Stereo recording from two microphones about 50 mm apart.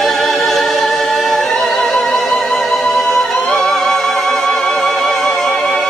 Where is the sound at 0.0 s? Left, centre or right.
Centre.